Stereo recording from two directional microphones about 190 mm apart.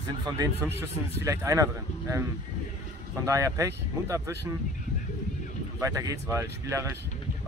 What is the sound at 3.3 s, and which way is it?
Speech, 15° right (ahead or behind).